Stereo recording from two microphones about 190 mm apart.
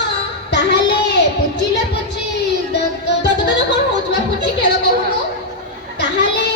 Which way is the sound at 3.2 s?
65° left (ahead or behind).